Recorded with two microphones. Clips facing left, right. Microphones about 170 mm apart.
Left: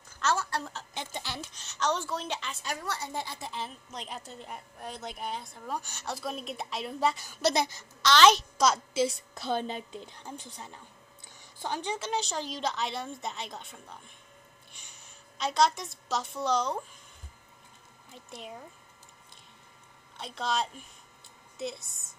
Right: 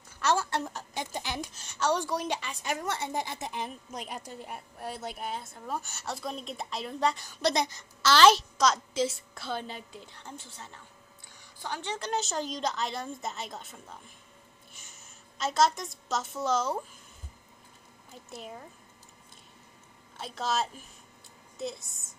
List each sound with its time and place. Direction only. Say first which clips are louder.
0.4 s a woman's voice: right 2 dB; 20° right (ahead or behind)
0.7 s a woman's voice: right 3 dB; 10° right (ahead or behind)
8.5 s a woman's voice: left 1 dB; 10° left (ahead or behind)
12.0 s a woman's voice: right 1 dB; centre (ahead or behind)
18.3 s a woman's voice: right 1 dB; centre (ahead or behind)
20.2 s a woman's voice: right 1 dB; 5° right (ahead or behind)